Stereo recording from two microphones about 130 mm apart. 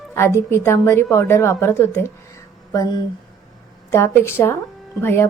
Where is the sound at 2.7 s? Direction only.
30° left (ahead or behind).